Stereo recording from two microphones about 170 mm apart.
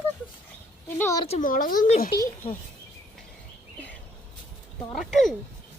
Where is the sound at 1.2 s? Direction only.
45° left (ahead or behind).